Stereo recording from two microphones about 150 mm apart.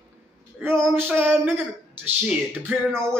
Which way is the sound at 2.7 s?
15° right (ahead or behind).